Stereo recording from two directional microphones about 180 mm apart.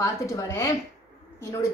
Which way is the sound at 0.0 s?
15° left (ahead or behind).